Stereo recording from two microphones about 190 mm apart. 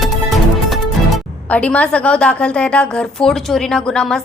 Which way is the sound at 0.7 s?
5° left (ahead or behind).